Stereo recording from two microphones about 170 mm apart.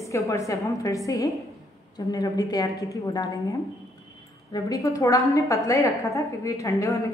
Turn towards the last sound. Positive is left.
turn(degrees=20)  # may be behind; listen again after turning